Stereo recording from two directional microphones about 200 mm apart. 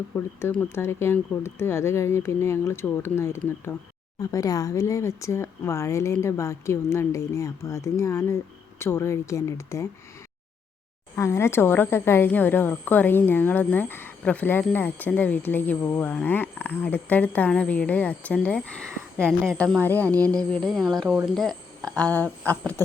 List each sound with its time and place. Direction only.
0.4 s speech: 10° left (ahead or behind)
11.1 s speech: 15° left (ahead or behind)
20.1 s a sound: 15° right (ahead or behind)
20.5 s speech: centre (ahead or behind)